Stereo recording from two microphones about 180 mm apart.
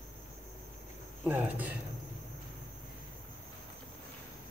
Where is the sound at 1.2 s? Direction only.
10° right (ahead or behind).